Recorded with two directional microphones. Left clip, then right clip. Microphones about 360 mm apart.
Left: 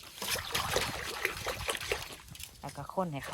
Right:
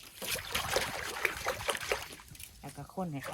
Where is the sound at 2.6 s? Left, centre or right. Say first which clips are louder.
Left 6 dB; left.